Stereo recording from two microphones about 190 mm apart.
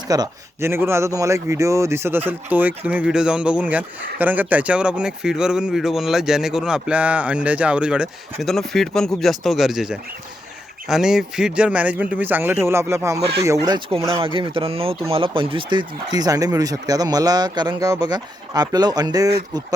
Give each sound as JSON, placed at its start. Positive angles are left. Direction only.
{"t": 0.1, "sound": "a man's voice", "side_deg": -15}